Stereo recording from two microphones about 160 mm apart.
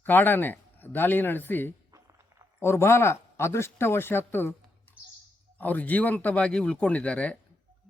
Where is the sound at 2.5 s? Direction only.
15° left (ahead or behind).